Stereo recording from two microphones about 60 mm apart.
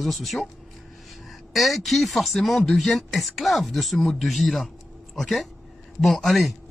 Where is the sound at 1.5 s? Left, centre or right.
Centre.